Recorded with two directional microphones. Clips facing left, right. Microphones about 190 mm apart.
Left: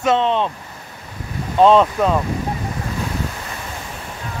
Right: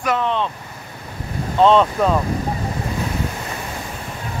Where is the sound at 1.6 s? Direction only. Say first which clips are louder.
Left 1 dB; 5° left (ahead or behind).